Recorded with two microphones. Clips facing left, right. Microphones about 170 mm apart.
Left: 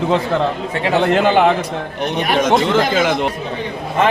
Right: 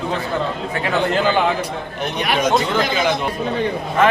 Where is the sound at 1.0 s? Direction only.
70° left (ahead or behind).